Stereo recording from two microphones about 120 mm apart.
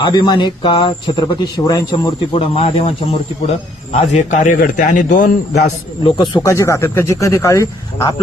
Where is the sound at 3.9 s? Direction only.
75° left (ahead or behind).